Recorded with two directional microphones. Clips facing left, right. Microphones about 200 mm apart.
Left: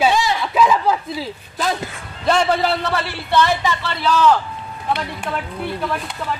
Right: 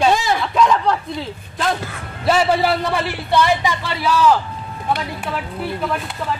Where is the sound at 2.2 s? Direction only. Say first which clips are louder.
Right 1 dB; 5° right (ahead or behind).